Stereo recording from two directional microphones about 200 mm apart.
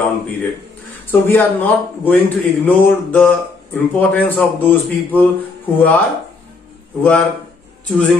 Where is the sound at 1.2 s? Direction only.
10° left (ahead or behind).